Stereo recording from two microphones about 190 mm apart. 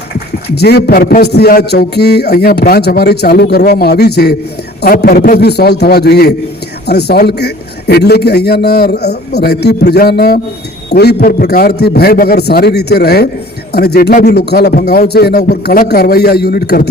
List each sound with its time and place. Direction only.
0.4 s a man's voice: 60° left (ahead or behind)